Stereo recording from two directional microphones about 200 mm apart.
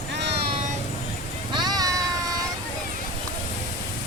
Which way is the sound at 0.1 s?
55° right (ahead or behind).